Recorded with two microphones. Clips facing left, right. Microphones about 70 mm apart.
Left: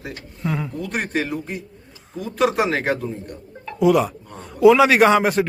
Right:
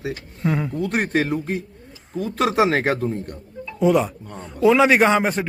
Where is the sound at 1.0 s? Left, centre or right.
Right.